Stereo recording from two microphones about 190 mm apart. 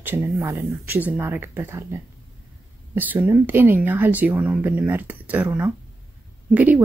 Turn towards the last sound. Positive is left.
turn(degrees=-10)  # may be behind; listen again after turning